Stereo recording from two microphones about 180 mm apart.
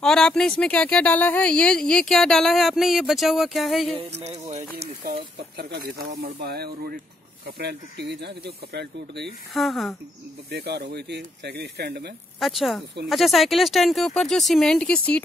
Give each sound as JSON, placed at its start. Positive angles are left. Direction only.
{"t": 0.0, "sound": "speech", "side_deg": 5}
{"t": 4.1, "sound": "speech", "side_deg": -35}
{"t": 5.0, "sound": "speech", "side_deg": -60}
{"t": 9.5, "sound": "speech", "side_deg": 0}
{"t": 10.5, "sound": "speech", "side_deg": -65}
{"t": 12.4, "sound": "speech", "side_deg": 0}